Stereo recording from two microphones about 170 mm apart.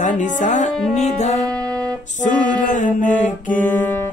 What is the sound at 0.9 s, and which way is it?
Speech, 40° left (ahead or behind).